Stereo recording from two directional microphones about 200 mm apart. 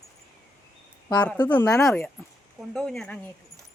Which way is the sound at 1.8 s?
Centre (ahead or behind).